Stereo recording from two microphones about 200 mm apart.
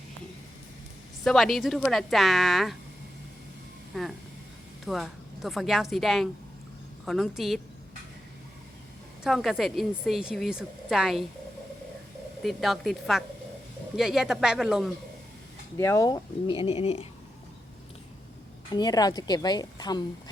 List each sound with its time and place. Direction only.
1.2 s a woman's voice: centre (ahead or behind)
3.9 s a woman's voice: centre (ahead or behind)
9.2 s a woman's voice: centre (ahead or behind)
12.4 s a woman's voice: centre (ahead or behind)
15.8 s a woman's voice: 15° left (ahead or behind); by 17.1 s 30° left (ahead or behind)
18.7 s a woman's voice: 20° left (ahead or behind)